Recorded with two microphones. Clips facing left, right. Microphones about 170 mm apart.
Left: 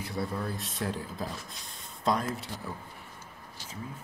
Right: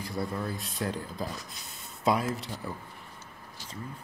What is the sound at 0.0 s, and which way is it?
A man's voice, centre (ahead or behind).